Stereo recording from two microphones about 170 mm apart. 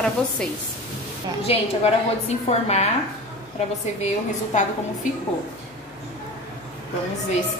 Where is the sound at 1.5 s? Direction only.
35° left (ahead or behind).